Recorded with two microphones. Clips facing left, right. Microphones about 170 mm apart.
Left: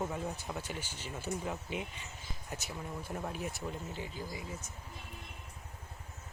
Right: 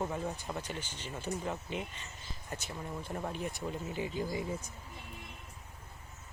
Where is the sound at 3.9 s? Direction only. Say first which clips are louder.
Right 6 dB; 15° right (ahead or behind).